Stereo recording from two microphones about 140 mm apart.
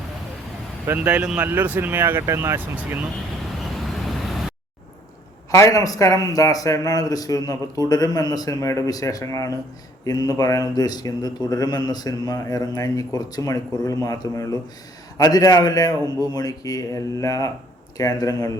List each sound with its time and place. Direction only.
0.9 s speech: 10° right (ahead or behind)
3.6 s vehicle: centre (ahead or behind)
5.5 s speech: 20° left (ahead or behind)